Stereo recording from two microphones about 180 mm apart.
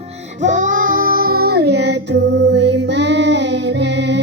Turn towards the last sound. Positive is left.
turn(degrees=-75)  # may be behind; listen again after turning